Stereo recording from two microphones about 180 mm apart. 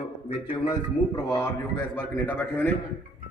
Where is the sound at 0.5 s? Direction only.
20° left (ahead or behind).